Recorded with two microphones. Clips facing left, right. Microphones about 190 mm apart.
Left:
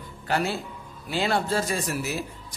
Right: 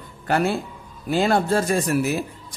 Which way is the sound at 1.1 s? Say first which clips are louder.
Right 6 dB; 45° right (ahead or behind).